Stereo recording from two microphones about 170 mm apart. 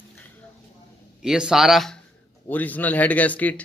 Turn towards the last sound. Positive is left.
turn(degrees=10)  # may be behind; listen again after turning